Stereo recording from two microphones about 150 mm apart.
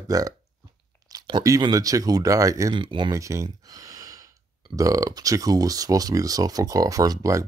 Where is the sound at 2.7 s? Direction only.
35° right (ahead or behind).